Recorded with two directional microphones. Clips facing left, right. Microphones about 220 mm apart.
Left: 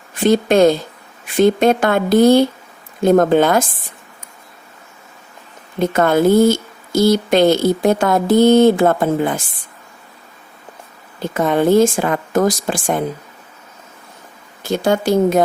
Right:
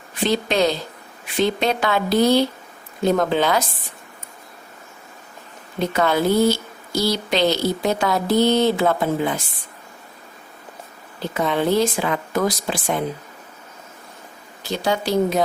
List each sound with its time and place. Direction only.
0.2 s speech: 50° left (ahead or behind)
5.8 s speech: 50° left (ahead or behind)
11.2 s speech: 50° left (ahead or behind)
14.6 s speech: 50° left (ahead or behind)